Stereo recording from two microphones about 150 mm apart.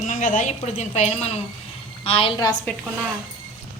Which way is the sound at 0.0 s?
60° left (ahead or behind).